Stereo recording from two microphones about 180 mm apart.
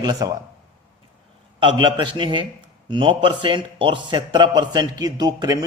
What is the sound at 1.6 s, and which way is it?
A man's voice, 25° right (ahead or behind).